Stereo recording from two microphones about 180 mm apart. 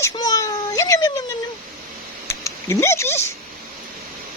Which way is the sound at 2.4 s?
15° left (ahead or behind).